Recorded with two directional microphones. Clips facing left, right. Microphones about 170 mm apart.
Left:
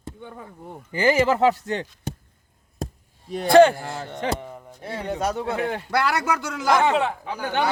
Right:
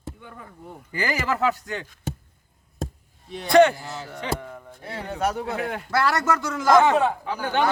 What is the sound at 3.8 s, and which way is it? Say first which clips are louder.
Speech: left 3 dB; 50° left (ahead or behind).